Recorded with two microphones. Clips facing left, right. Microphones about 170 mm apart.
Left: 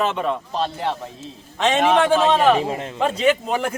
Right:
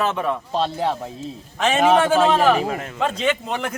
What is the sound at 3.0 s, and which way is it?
Speech, 5° left (ahead or behind).